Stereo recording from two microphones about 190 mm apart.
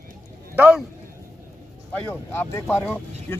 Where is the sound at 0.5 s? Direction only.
10° right (ahead or behind).